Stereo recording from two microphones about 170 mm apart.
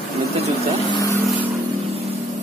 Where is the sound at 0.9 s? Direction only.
20° left (ahead or behind).